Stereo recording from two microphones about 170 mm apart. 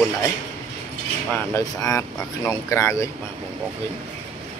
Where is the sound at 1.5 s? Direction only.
20° left (ahead or behind).